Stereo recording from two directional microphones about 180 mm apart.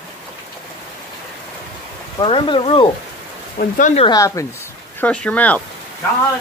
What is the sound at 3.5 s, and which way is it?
Speech, 45° left (ahead or behind).